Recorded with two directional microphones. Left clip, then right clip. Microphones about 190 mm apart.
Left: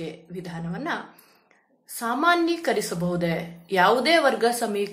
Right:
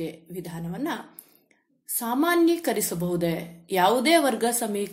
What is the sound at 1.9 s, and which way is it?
A woman's voice, 40° right (ahead or behind).